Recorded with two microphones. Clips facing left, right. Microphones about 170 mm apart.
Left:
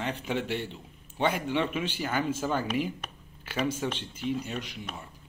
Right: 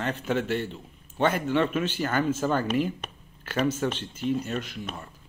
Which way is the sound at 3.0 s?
25° right (ahead or behind).